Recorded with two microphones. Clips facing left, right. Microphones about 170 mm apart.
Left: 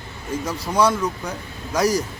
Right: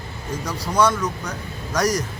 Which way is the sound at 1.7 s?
5° left (ahead or behind).